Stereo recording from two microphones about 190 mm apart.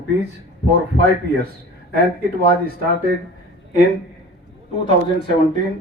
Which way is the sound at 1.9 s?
55° right (ahead or behind).